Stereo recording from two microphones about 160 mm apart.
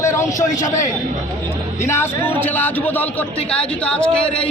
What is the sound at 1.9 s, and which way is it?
A man's voice, 15° left (ahead or behind).